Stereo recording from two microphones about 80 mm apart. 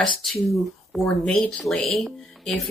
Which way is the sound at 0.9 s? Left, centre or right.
Centre.